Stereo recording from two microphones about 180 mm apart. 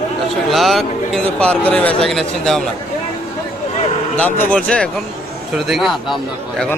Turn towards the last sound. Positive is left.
turn(degrees=0)  # may be behind; listen again after turning